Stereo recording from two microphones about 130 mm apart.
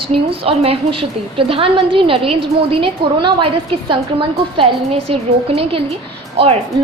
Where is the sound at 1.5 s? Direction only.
45° right (ahead or behind).